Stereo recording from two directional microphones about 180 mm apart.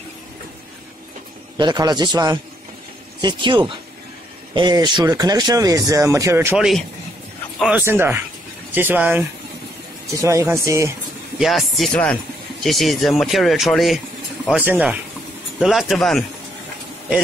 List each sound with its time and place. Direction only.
1.6 s speech: 25° right (ahead or behind)
6.6 s speech: centre (ahead or behind)
7.8 s speech: 15° right (ahead or behind)
10.2 s speech: 15° right (ahead or behind)
11.3 s speech: centre (ahead or behind)